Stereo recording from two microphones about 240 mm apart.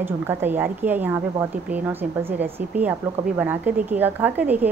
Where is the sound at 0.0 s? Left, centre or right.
Centre.